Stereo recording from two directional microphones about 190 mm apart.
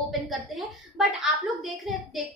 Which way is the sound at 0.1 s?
Centre (ahead or behind).